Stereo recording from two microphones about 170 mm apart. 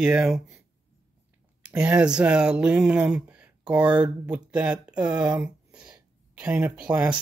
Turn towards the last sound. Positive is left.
turn(degrees=-10)  # may be behind; listen again after turning